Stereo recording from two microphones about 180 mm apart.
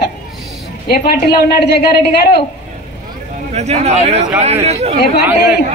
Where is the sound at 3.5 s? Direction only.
35° right (ahead or behind).